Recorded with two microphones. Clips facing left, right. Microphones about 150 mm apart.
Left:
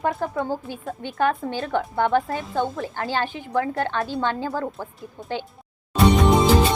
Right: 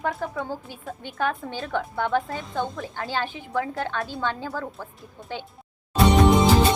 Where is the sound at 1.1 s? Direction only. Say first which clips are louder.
Left 5 dB; 45° left (ahead or behind).